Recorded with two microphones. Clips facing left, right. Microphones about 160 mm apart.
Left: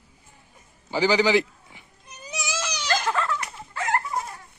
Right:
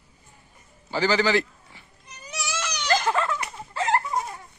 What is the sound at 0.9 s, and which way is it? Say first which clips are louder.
Speech: left 2 dB; 15° left (ahead or behind).